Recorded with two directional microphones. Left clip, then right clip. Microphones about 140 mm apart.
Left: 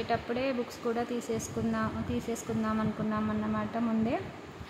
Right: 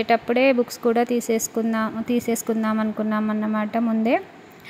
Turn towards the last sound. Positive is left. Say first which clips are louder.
# right 10 dB
turn(degrees=-45)  # may be behind; listen again after turning